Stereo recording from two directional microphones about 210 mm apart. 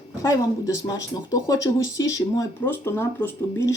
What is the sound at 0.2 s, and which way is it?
Speech, 15° left (ahead or behind).